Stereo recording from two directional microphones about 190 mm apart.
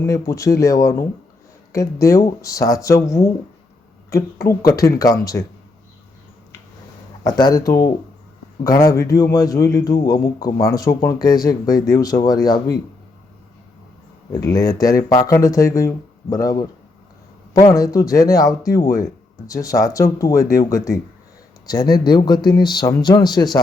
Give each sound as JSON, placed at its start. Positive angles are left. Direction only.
{"t": 0.0, "sound": "speech", "side_deg": 15}
{"t": 4.8, "sound": "a man's voice", "side_deg": 20}
{"t": 7.3, "sound": "a man's voice", "side_deg": 20}
{"t": 14.4, "sound": "a man's voice", "side_deg": 20}